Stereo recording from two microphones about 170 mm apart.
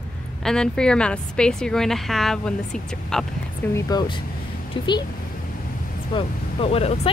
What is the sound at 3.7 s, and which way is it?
Speech, 25° left (ahead or behind).